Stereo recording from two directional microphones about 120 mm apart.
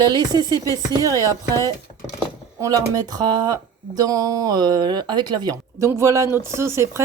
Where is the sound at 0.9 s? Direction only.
30° right (ahead or behind).